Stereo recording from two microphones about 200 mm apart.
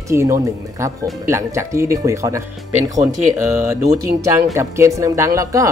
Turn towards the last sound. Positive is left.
turn(degrees=-15)  # may be behind; listen again after turning